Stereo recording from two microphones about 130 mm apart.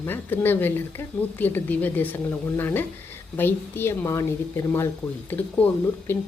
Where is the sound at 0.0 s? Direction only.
15° left (ahead or behind).